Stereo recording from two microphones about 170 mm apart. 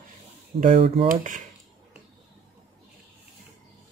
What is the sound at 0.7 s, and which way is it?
Speech, 35° right (ahead or behind).